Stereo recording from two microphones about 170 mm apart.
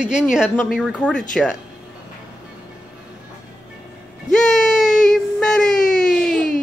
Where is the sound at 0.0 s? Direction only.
5° right (ahead or behind).